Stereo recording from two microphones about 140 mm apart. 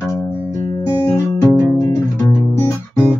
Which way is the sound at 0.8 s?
20° left (ahead or behind).